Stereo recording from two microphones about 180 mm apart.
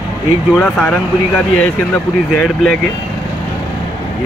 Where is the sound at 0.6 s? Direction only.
5° left (ahead or behind).